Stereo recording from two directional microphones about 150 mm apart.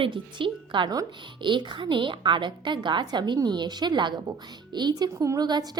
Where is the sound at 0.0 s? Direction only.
35° right (ahead or behind).